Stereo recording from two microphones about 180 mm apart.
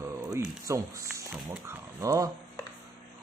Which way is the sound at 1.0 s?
15° right (ahead or behind).